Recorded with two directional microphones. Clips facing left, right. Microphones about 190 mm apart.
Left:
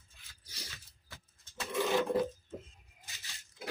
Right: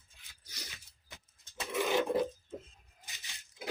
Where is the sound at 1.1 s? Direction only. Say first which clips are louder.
Right 1 dB; 15° right (ahead or behind).